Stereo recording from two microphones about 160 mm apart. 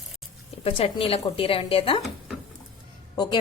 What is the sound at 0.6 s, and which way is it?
Speech, 35° left (ahead or behind).